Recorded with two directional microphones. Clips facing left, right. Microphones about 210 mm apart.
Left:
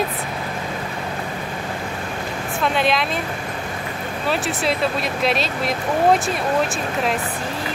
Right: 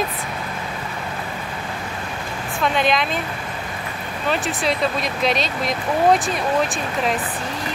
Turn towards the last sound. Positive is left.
turn(degrees=0)  # may be behind; listen again after turning